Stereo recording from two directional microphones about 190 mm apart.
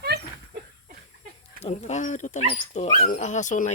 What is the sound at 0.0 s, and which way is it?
Dog, 60° right (ahead or behind).